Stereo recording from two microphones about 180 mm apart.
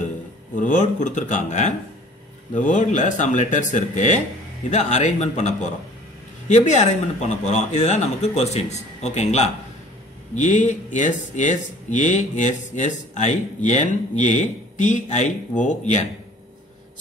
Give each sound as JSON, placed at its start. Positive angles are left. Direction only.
{"t": 0.6, "sound": "speech", "side_deg": 45}